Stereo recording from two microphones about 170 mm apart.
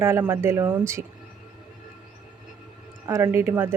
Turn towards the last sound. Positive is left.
turn(degrees=-15)  # may be behind; listen again after turning